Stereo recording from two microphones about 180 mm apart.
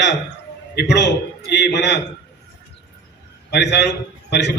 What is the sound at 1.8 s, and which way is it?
Speech, 70° left (ahead or behind).